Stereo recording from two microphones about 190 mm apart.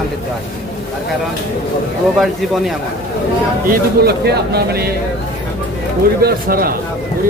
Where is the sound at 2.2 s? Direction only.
Centre (ahead or behind).